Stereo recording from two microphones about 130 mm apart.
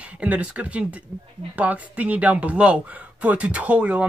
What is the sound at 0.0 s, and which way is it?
Speech, 10° right (ahead or behind).